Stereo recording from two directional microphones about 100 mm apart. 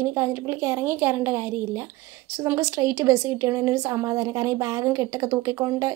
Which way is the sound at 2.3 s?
35° right (ahead or behind).